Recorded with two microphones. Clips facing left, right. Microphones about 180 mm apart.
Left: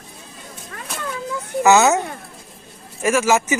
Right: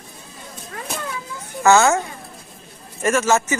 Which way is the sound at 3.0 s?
5° left (ahead or behind).